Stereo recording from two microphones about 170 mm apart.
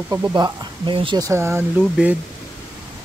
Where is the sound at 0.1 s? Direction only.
20° right (ahead or behind).